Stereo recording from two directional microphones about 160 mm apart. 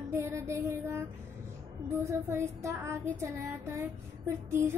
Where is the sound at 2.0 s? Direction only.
20° right (ahead or behind).